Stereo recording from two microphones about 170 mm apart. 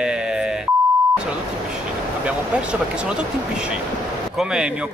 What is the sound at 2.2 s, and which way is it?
Speech, 5° right (ahead or behind).